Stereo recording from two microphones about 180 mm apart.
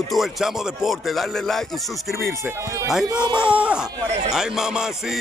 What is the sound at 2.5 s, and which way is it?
Speech, 15° right (ahead or behind).